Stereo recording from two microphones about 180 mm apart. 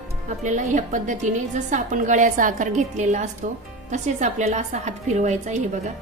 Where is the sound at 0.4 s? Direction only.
40° right (ahead or behind).